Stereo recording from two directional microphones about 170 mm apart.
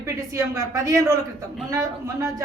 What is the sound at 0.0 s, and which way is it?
A man's voice, 20° right (ahead or behind).